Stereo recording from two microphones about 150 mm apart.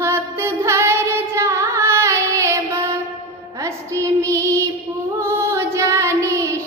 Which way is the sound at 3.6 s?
20° right (ahead or behind).